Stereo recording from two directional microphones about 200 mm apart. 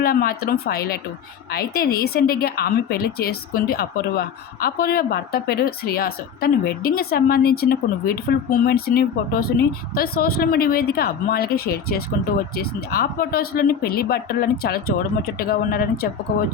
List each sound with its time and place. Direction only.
0.0 s a woman's voice: 50° left (ahead or behind)